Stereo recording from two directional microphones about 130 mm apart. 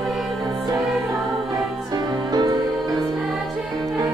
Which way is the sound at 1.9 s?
30° right (ahead or behind).